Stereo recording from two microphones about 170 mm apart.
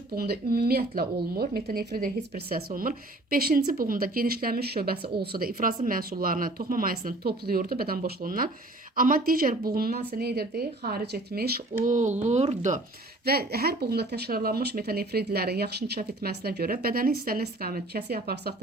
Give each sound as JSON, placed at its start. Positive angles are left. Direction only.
{"t": 0.2, "sound": "speech", "side_deg": -65}
{"t": 11.8, "sound": "speech", "side_deg": -45}
{"t": 13.2, "sound": "speech", "side_deg": -65}